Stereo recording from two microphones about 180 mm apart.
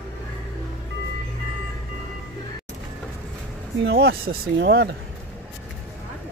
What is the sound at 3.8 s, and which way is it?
Speech, 70° right (ahead or behind).